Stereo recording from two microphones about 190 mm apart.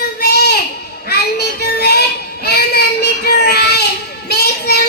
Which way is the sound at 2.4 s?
55° left (ahead or behind).